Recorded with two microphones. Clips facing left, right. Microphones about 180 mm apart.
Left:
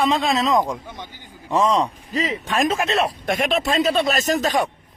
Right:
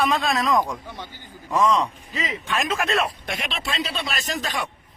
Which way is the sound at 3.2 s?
45° left (ahead or behind).